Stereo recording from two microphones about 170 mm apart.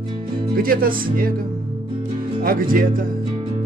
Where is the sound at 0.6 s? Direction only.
60° right (ahead or behind).